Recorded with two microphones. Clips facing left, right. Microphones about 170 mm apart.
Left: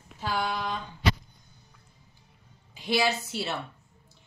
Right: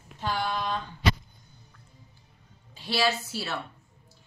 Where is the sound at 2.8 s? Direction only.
15° left (ahead or behind).